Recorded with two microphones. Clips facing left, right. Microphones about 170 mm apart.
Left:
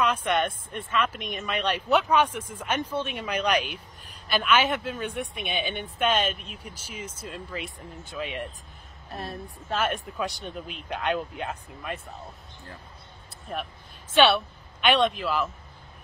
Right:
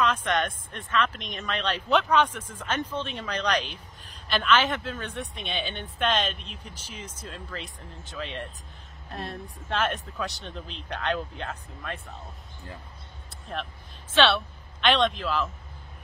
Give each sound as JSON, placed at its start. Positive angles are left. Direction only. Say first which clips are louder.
{"t": 0.0, "sound": "speech", "louder": "left 1 dB", "side_deg": 10}
{"t": 13.5, "sound": "speech", "louder": "left 1 dB", "side_deg": 5}